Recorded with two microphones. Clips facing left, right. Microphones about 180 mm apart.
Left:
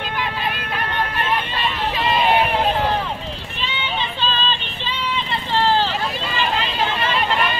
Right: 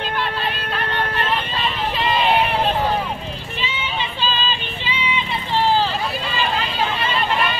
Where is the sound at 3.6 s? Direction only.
5° right (ahead or behind).